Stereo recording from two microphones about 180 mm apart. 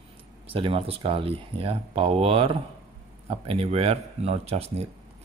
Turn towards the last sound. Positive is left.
turn(degrees=-35)  # may be behind; listen again after turning